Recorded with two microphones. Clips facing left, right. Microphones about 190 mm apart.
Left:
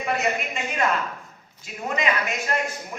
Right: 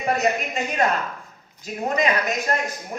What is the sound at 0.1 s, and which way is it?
A woman's voice, 40° right (ahead or behind).